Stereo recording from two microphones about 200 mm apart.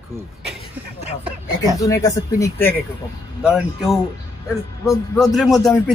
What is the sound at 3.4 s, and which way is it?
Speech, 5° right (ahead or behind).